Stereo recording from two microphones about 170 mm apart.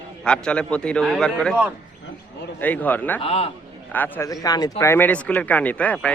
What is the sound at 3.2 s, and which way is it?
Speech, 35° left (ahead or behind).